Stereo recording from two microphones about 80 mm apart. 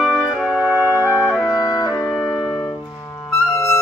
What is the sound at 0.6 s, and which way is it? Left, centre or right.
Music, left.